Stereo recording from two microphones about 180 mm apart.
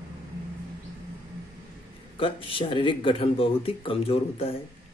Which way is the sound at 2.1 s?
30° left (ahead or behind).